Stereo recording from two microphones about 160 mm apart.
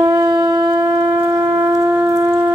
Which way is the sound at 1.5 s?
15° right (ahead or behind).